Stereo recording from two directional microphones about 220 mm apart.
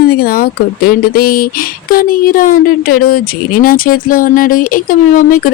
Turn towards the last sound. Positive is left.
turn(degrees=40)  # may be behind; listen again after turning